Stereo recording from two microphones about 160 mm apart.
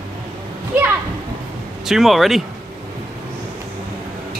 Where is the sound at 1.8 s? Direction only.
Centre (ahead or behind).